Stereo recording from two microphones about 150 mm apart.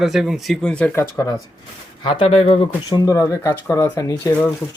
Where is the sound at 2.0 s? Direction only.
40° left (ahead or behind).